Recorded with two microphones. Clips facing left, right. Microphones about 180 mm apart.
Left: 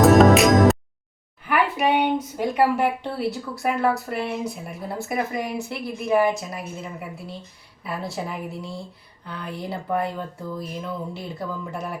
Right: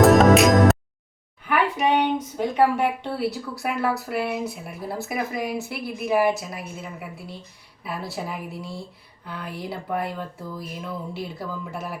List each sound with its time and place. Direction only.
0.0 s music: centre (ahead or behind)
1.5 s a woman's voice: 5° left (ahead or behind)